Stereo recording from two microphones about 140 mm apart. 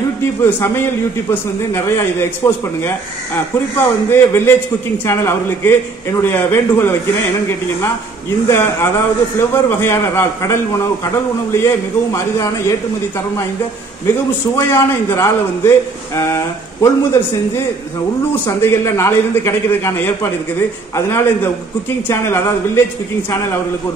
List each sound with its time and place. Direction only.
0.4 s a man's voice: 15° left (ahead or behind)
14.0 s a man's voice: 15° left (ahead or behind)
18.3 s a man's voice: 15° left (ahead or behind)